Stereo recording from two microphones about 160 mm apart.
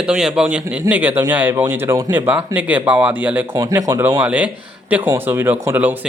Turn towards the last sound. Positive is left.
turn(degrees=-10)  # may be behind; listen again after turning